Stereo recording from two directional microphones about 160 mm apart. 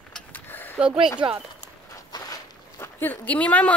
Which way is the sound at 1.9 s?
25° left (ahead or behind).